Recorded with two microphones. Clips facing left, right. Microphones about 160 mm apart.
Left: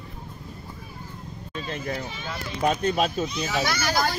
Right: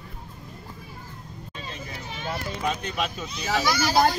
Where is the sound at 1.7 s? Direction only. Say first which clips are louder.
Left 8 dB; 55° left (ahead or behind).